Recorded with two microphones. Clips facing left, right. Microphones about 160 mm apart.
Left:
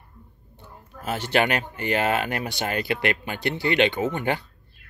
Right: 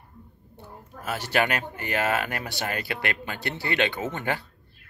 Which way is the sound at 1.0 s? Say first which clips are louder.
Left 3 dB; 20° left (ahead or behind).